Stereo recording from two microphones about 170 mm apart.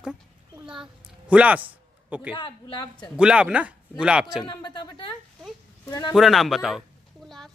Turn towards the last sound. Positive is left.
turn(degrees=0)  # may be behind; listen again after turning